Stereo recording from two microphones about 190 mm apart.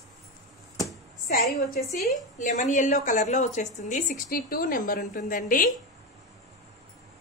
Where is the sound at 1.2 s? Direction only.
50° left (ahead or behind).